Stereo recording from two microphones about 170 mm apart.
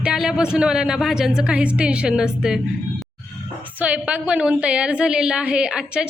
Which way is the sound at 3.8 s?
10° right (ahead or behind).